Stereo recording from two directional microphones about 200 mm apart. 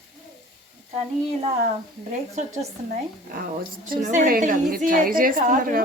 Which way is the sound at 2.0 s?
35° right (ahead or behind).